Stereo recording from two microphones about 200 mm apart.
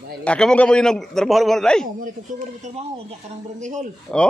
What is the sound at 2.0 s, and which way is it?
Speech, 35° right (ahead or behind).